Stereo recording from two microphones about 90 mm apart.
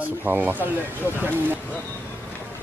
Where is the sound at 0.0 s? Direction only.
20° right (ahead or behind).